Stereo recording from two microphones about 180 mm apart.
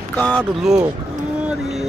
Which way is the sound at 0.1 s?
10° left (ahead or behind).